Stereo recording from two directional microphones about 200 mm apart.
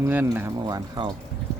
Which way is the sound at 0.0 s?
10° right (ahead or behind).